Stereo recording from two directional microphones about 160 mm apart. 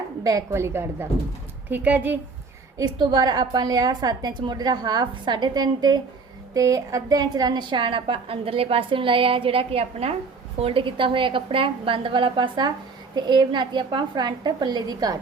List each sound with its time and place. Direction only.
0.3 s a woman's voice: 20° right (ahead or behind)
2.7 s a woman's voice: 25° right (ahead or behind)